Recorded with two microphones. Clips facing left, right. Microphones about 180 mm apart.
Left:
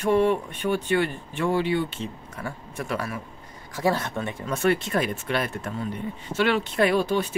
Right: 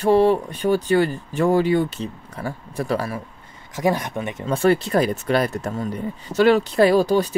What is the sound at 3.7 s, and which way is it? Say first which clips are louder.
Speech: right 3 dB; 15° right (ahead or behind).